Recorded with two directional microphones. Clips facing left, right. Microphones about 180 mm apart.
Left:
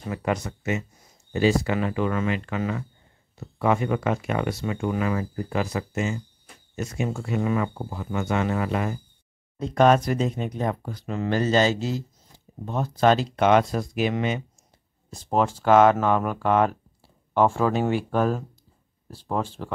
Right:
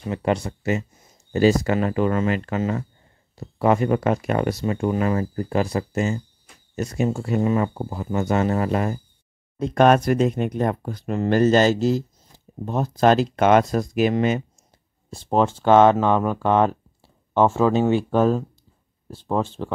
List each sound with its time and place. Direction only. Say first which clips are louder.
0.1 s speech: right 4 dB; 30° right (ahead or behind)
9.6 s speech: right 2 dB; 55° right (ahead or behind)
15.0 s speech: right 3 dB; 30° right (ahead or behind)